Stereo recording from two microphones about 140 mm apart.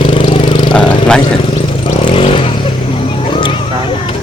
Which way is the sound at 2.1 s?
40° left (ahead or behind).